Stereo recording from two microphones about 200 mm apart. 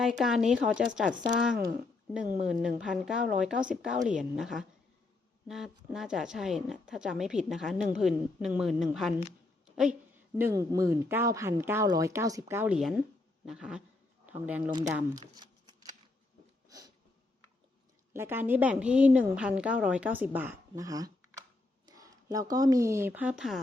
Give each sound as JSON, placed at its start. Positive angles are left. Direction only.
{"t": 0.2, "sound": "a woman's voice", "side_deg": 0}
{"t": 2.1, "sound": "a woman's voice", "side_deg": -5}
{"t": 10.3, "sound": "a woman's voice", "side_deg": -15}
{"t": 14.7, "sound": "speech", "side_deg": -20}
{"t": 15.4, "sound": "shuffling cards", "side_deg": -20}
{"t": 16.6, "sound": "a sound", "side_deg": -15}
{"t": 18.1, "sound": "a woman's voice", "side_deg": -10}